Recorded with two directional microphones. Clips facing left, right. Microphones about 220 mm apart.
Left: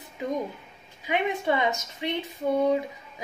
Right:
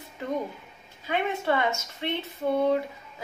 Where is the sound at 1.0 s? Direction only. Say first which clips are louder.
Left 1 dB; 15° left (ahead or behind).